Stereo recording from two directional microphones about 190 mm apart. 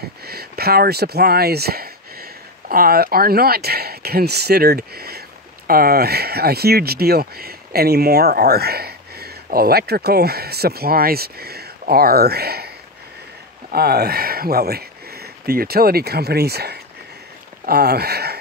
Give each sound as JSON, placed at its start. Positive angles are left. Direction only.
{"t": 0.2, "sound": "speech", "side_deg": -55}